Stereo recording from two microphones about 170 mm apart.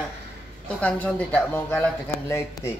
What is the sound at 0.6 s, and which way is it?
Speech, 10° left (ahead or behind).